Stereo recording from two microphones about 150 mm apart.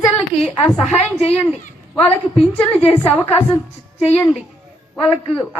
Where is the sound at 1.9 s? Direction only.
10° left (ahead or behind).